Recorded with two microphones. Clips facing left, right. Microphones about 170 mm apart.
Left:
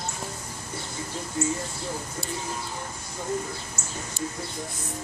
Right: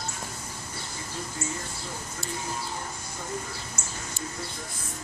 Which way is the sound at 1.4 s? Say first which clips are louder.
Left 9 dB; 20° left (ahead or behind).